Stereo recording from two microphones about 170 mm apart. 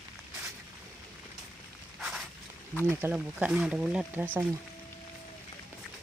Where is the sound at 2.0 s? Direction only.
5° right (ahead or behind).